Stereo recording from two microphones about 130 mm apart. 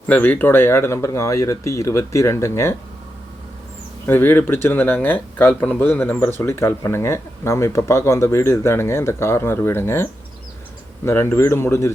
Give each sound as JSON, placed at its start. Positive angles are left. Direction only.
{"t": 0.1, "sound": "speech", "side_deg": 15}
{"t": 4.0, "sound": "speech", "side_deg": 15}